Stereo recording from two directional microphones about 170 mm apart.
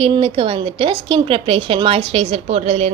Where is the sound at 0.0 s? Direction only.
35° right (ahead or behind).